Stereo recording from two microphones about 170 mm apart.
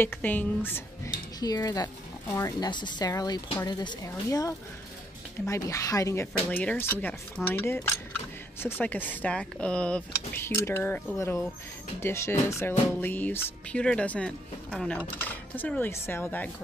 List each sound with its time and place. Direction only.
0.0 s speech: 10° left (ahead or behind)